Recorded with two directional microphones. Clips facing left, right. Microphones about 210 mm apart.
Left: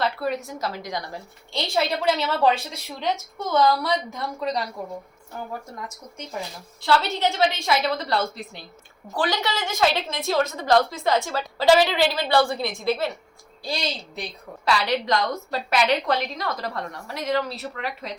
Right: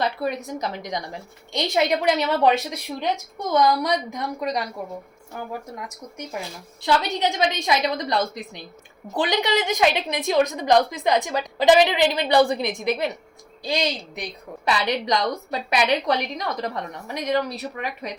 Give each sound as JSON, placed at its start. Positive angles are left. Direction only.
{"t": 0.0, "sound": "a woman's voice", "side_deg": -20}
{"t": 6.8, "sound": "a woman's voice", "side_deg": -15}